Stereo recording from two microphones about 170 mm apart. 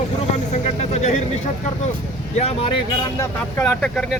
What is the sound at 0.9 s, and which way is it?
Speech, 40° left (ahead or behind).